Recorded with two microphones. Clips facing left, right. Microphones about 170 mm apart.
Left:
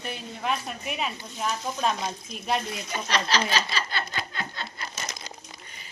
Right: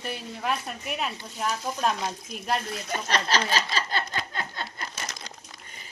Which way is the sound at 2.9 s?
50° right (ahead or behind).